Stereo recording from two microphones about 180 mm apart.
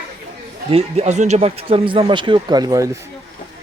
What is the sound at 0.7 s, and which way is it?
Speech, 35° right (ahead or behind).